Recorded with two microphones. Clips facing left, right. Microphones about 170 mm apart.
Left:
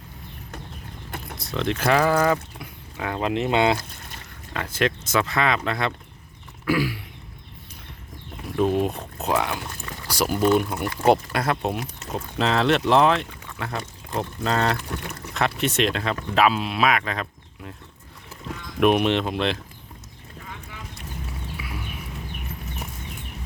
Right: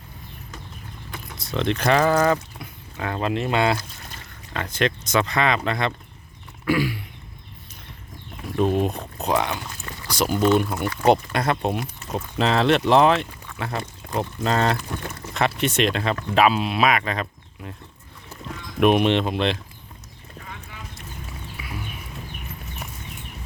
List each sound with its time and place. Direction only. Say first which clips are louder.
1.4 s speech: right 2 dB; centre (ahead or behind); by 3.8 s 20° left (ahead or behind)
4.5 s speech: even; 5° left (ahead or behind)
8.5 s pour: even; centre (ahead or behind)
10.1 s speech: right 1 dB; 5° left (ahead or behind)
18.8 s speech: right 1 dB; centre (ahead or behind)